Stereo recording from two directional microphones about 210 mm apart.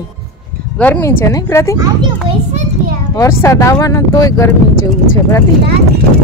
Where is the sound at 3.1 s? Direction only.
15° left (ahead or behind).